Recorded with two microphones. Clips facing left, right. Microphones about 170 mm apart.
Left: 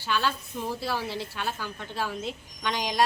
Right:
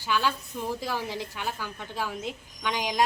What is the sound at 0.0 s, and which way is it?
A woman's voice, 15° right (ahead or behind).